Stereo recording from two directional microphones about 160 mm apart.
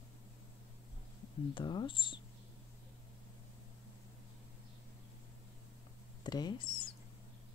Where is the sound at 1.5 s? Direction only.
30° left (ahead or behind).